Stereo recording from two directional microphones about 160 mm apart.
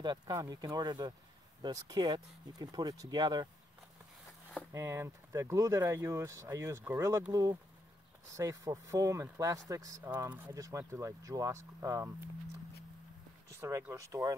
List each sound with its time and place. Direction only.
0.0 s speech: 25° right (ahead or behind)
4.7 s speech: 15° right (ahead or behind)
8.4 s speech: 20° right (ahead or behind)
13.5 s speech: 15° right (ahead or behind)